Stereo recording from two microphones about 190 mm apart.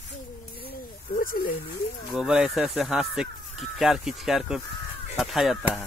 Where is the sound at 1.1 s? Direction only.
50° left (ahead or behind).